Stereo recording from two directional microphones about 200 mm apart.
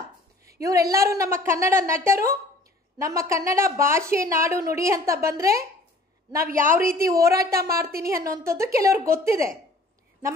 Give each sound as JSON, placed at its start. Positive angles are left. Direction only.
{"t": 0.5, "sound": "a woman's voice", "side_deg": -15}
{"t": 6.4, "sound": "speech", "side_deg": -45}
{"t": 7.0, "sound": "a woman's voice", "side_deg": -15}